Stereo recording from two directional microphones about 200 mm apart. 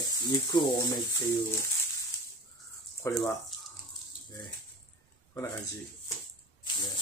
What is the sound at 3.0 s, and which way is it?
Speech, 15° left (ahead or behind).